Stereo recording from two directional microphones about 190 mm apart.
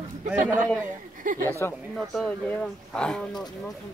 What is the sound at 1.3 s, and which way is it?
Speech, 45° right (ahead or behind).